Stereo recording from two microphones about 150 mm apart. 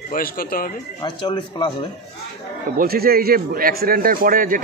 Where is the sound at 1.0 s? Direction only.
30° left (ahead or behind).